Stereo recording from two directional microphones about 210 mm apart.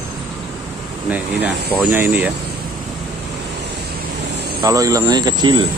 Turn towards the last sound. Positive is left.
turn(degrees=-20)  # may be behind; listen again after turning